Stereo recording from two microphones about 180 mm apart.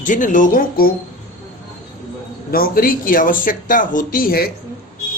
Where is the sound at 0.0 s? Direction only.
45° left (ahead or behind).